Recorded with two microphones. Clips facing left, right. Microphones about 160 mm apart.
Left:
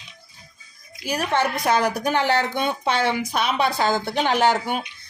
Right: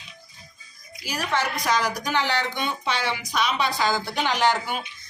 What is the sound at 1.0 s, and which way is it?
A woman's voice, 55° left (ahead or behind).